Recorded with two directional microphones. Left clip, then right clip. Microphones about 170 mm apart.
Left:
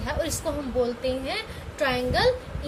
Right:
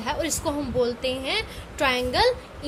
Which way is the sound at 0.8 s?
50° right (ahead or behind).